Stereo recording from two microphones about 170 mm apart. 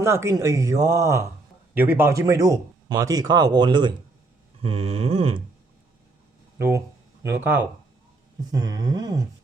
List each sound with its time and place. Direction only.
0.0 s speech: 15° right (ahead or behind)
4.6 s a sound: 35° right (ahead or behind)
6.6 s speech: 15° right (ahead or behind)